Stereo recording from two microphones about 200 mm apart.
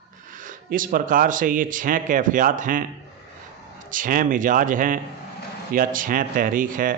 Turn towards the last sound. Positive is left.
turn(degrees=-40)  # may be behind; listen again after turning